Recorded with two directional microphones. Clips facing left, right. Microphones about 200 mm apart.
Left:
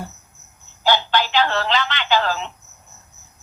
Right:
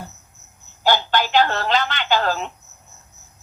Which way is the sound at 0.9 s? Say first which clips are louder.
Even; 45° right (ahead or behind).